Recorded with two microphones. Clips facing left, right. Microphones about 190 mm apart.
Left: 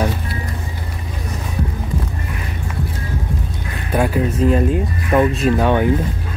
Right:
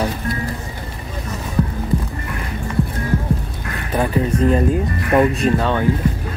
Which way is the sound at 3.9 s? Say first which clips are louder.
Left 1 dB; 10° left (ahead or behind).